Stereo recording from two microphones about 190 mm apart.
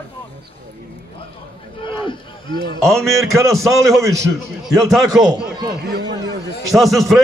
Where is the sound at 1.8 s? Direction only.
25° left (ahead or behind).